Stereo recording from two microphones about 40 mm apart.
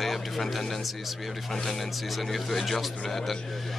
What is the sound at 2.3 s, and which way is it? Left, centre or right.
Speech, centre.